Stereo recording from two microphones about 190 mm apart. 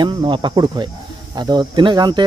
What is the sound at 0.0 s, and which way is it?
Speech, 25° right (ahead or behind).